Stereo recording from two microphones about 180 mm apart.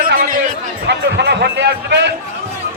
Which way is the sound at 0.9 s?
70° right (ahead or behind).